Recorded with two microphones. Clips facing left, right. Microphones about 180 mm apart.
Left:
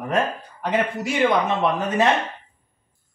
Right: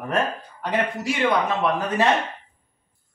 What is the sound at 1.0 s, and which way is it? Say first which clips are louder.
Speech: left 3 dB; 25° left (ahead or behind).